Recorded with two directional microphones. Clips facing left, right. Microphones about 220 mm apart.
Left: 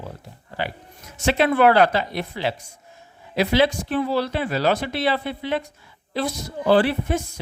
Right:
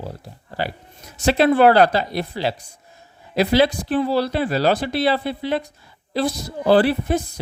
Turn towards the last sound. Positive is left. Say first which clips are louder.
# right 2 dB
turn(degrees=-35)  # may be behind; listen again after turning